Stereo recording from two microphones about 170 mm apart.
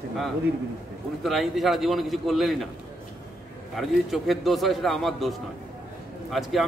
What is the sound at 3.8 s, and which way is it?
A man's voice, centre (ahead or behind).